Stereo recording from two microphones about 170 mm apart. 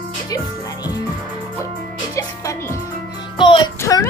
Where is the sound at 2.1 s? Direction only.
20° left (ahead or behind).